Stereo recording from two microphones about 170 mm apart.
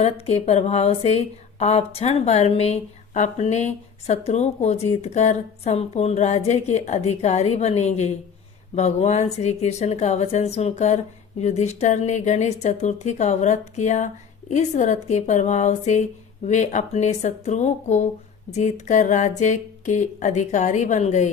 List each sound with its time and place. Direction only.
0.0 s speech: 40° left (ahead or behind)